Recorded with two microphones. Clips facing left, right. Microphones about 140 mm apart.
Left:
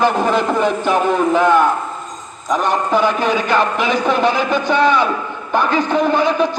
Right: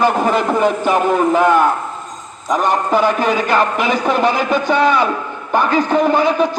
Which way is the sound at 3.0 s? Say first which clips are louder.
Right 1 dB; 40° right (ahead or behind).